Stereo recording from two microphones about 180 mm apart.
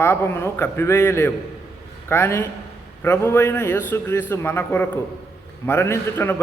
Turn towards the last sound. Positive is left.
turn(degrees=15)  # may be behind; listen again after turning